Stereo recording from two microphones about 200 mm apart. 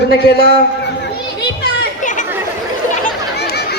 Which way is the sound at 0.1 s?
55° left (ahead or behind).